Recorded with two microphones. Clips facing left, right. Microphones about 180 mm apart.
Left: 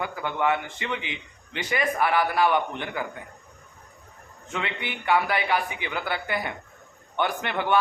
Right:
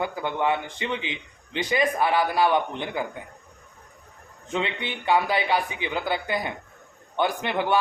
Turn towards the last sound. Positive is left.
turn(degrees=-15)  # may be behind; listen again after turning